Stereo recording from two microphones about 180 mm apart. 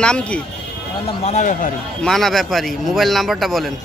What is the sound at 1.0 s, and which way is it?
Speech, 40° left (ahead or behind).